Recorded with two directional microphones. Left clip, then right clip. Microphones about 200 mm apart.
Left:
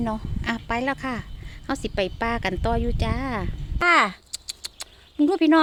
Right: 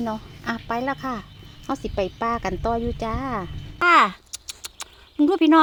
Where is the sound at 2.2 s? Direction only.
35° left (ahead or behind).